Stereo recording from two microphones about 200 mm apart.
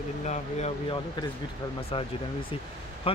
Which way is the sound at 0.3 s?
35° left (ahead or behind).